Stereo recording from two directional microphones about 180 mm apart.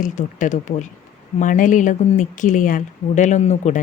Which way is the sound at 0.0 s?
45° left (ahead or behind).